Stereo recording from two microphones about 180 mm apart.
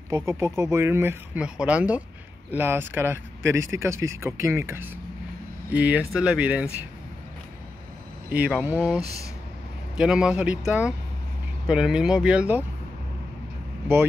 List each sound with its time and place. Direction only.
0.1 s speech: 15° right (ahead or behind)
8.3 s speech: 5° right (ahead or behind)